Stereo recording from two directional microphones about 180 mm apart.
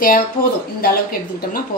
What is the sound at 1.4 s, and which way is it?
Speech, 55° left (ahead or behind).